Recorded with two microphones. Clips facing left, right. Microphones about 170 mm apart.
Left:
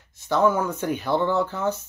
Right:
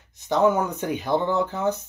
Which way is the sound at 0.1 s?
20° right (ahead or behind).